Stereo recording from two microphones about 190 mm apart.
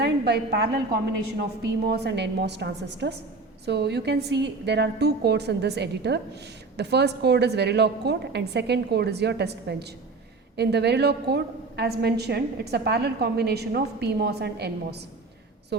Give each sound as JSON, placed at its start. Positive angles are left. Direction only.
{"t": 0.0, "sound": "a woman's voice", "side_deg": -60}
{"t": 1.9, "sound": "a woman's voice", "side_deg": -60}